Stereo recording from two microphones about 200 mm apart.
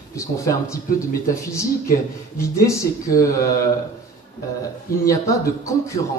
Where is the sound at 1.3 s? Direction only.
15° left (ahead or behind).